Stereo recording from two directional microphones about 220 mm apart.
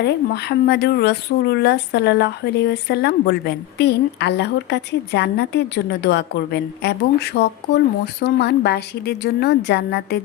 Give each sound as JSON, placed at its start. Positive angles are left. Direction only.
{"t": 0.0, "sound": "speech", "side_deg": 50}